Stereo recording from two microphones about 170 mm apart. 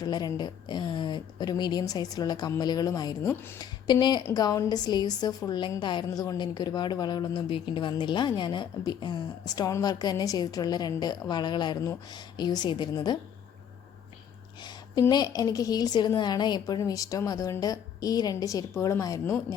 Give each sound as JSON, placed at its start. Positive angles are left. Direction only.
{"t": 0.0, "sound": "a woman's voice", "side_deg": 25}
{"t": 3.8, "sound": "a woman's voice", "side_deg": 25}
{"t": 14.6, "sound": "a sound", "side_deg": 25}
{"t": 15.0, "sound": "a woman's voice", "side_deg": 20}